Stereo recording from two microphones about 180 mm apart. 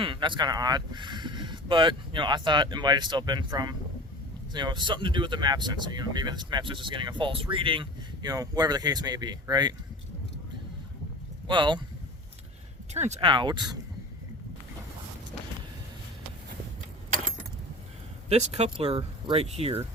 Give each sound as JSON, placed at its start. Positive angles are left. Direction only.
{"t": 0.0, "sound": "speech", "side_deg": -25}
{"t": 11.4, "sound": "speech", "side_deg": -25}
{"t": 12.9, "sound": "speech", "side_deg": -40}
{"t": 18.3, "sound": "speech", "side_deg": -35}